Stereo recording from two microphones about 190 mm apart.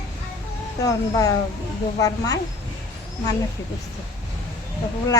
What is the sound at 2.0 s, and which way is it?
Speech, 20° left (ahead or behind).